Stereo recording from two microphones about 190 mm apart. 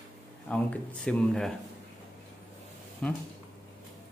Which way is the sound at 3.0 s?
5° left (ahead or behind).